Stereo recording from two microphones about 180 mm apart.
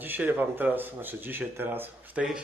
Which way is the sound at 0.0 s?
10° right (ahead or behind).